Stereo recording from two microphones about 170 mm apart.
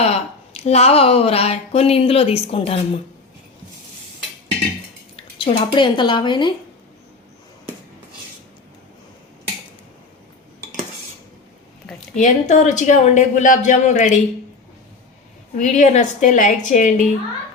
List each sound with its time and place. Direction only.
0.0 s speech: 40° left (ahead or behind)
5.4 s speech: 30° left (ahead or behind)
12.1 s a woman's voice: 45° left (ahead or behind)
15.5 s a woman's voice: 45° left (ahead or behind)